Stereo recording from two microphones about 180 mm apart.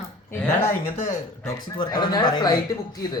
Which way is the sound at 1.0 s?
20° left (ahead or behind).